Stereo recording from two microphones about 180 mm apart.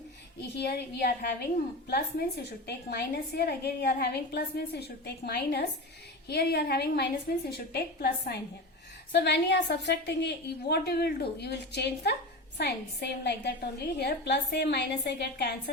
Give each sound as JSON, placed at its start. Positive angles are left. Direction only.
{"t": 0.5, "sound": "a woman's voice", "side_deg": 65}